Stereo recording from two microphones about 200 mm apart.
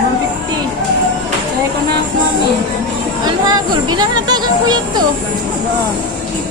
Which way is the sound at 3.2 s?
20° right (ahead or behind).